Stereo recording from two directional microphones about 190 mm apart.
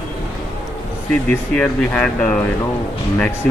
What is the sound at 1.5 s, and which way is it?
Speech, 5° left (ahead or behind).